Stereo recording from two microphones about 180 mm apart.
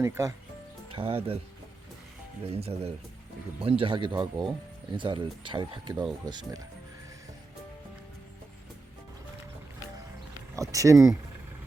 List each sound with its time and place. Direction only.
0.0 s speech: 15° right (ahead or behind)
0.9 s speech: 30° right (ahead or behind)
2.4 s speech: 35° right (ahead or behind)
10.5 s speech: 20° right (ahead or behind)